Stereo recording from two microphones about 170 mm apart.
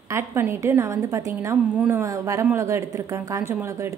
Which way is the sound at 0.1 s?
15° right (ahead or behind).